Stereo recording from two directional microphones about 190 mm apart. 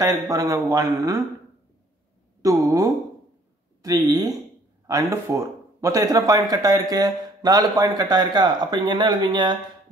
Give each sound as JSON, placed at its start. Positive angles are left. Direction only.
{"t": 0.0, "sound": "speech", "side_deg": -20}
{"t": 2.4, "sound": "speech", "side_deg": -20}